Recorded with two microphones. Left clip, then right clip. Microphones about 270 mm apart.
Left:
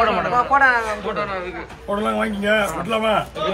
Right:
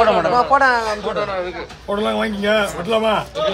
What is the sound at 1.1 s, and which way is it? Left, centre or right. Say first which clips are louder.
Speech: right 3 dB; right.